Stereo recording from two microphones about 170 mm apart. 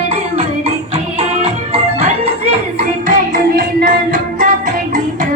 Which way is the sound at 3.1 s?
55° right (ahead or behind).